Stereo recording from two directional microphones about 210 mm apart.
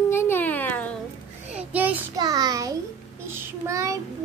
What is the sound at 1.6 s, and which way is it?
Child singing, 5° right (ahead or behind).